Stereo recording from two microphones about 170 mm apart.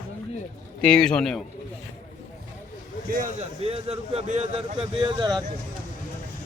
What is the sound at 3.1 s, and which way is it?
Speech, 55° right (ahead or behind).